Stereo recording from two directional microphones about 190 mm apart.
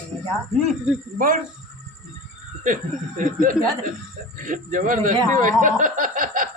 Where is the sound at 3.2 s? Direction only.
45° right (ahead or behind).